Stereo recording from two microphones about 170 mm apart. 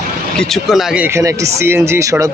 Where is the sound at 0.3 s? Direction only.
Centre (ahead or behind).